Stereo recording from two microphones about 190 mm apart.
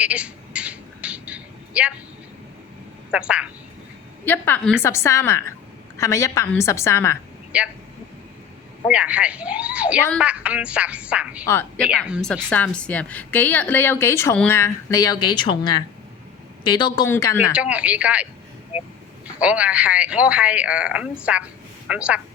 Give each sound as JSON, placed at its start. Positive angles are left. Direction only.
{"t": 0.0, "sound": "a sound", "side_deg": -5}
{"t": 3.1, "sound": "a woman's voice", "side_deg": -5}
{"t": 4.3, "sound": "a woman's voice", "side_deg": 10}
{"t": 7.5, "sound": "speech", "side_deg": -5}
{"t": 8.9, "sound": "a woman's voice", "side_deg": -5}
{"t": 17.5, "sound": "speech", "side_deg": -5}
{"t": 19.4, "sound": "a woman's voice", "side_deg": -5}